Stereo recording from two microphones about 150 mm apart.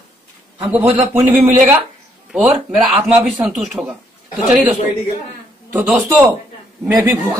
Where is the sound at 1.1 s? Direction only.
15° right (ahead or behind).